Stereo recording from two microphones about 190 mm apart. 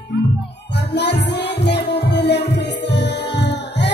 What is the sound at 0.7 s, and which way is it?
Music, 65° left (ahead or behind).